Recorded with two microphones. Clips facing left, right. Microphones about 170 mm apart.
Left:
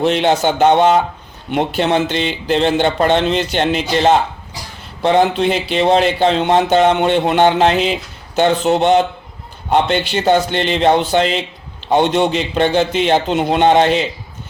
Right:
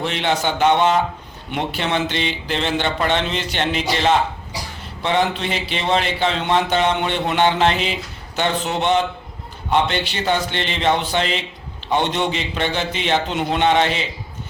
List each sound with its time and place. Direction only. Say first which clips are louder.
0.0 s a man's voice: left 7 dB; 40° left (ahead or behind)